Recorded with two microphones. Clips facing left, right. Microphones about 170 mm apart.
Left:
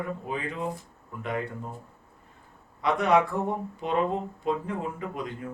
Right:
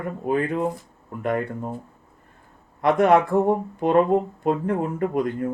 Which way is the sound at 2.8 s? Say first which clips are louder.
Right 6 dB; 55° right (ahead or behind).